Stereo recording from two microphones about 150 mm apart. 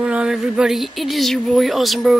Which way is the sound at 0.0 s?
5° right (ahead or behind).